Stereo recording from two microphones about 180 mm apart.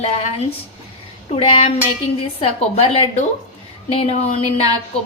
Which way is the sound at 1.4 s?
30° left (ahead or behind).